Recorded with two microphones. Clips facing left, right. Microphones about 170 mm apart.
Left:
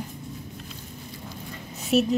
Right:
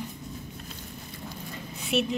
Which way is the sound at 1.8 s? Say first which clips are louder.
Left 6 dB; 40° left (ahead or behind).